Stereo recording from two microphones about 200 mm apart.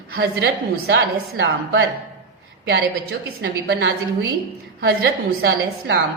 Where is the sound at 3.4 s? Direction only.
60° right (ahead or behind).